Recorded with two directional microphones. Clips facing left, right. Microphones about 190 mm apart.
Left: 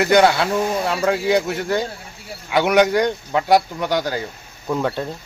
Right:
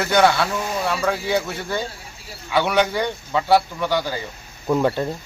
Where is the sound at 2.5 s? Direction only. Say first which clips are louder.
Left 4 dB; 15° left (ahead or behind).